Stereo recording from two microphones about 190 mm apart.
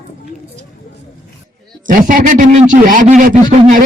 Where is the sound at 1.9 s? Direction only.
45° right (ahead or behind).